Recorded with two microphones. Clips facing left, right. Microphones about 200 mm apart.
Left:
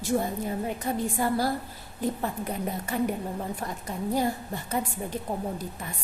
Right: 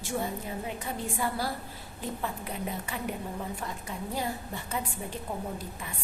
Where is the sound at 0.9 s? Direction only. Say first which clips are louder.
Left 9 dB; 45° left (ahead or behind).